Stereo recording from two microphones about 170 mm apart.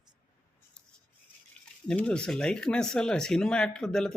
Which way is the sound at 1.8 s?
5° left (ahead or behind).